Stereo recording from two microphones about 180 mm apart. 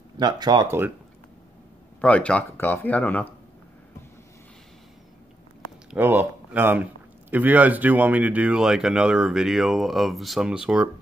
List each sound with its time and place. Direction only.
0.2 s speech: 25° right (ahead or behind)
2.0 s speech: 5° left (ahead or behind)
5.9 s a man's voice: 10° right (ahead or behind)